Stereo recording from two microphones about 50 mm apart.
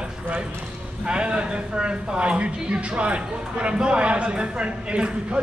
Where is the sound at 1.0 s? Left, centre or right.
Centre.